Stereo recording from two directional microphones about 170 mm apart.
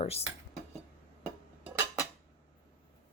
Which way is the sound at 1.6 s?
15° right (ahead or behind).